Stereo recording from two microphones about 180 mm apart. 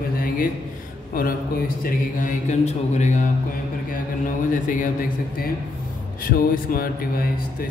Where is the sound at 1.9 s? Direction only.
45° left (ahead or behind).